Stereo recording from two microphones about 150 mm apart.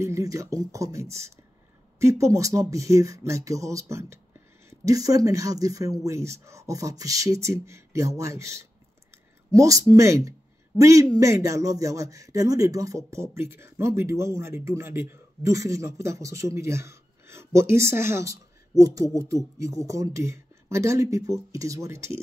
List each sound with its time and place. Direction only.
0.0 s speech: 20° right (ahead or behind)